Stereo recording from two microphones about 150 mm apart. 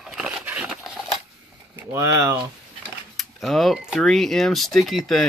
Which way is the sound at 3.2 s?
Centre (ahead or behind).